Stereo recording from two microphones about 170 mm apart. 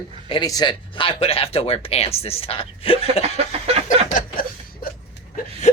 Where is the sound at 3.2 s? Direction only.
35° right (ahead or behind).